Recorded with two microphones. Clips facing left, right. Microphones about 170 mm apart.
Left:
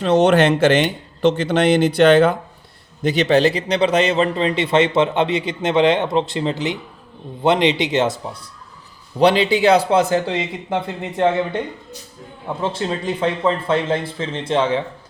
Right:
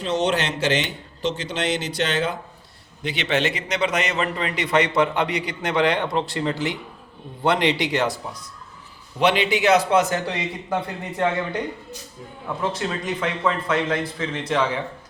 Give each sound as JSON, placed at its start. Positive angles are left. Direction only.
{"t": 0.0, "sound": "speech", "side_deg": 55}
{"t": 3.0, "sound": "a man's voice", "side_deg": 40}
{"t": 9.1, "sound": "a man's voice", "side_deg": 35}
{"t": 12.6, "sound": "a man's voice", "side_deg": 30}